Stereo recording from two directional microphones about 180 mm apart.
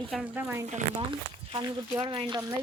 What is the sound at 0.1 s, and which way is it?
Speech, centre (ahead or behind).